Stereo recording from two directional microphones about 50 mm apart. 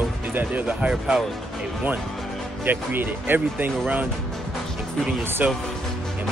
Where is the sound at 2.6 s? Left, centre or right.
Right.